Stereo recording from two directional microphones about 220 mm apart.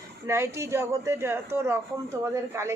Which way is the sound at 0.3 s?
10° right (ahead or behind).